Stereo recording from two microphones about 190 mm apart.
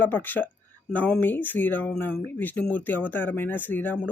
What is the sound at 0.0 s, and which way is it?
Speech, 10° left (ahead or behind).